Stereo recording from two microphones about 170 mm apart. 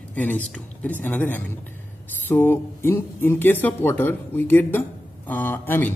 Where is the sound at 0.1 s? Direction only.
10° left (ahead or behind).